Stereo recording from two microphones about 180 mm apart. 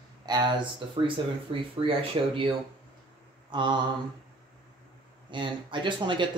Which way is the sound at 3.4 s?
25° right (ahead or behind).